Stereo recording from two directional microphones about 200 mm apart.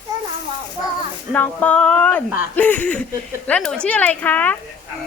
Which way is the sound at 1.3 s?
10° left (ahead or behind).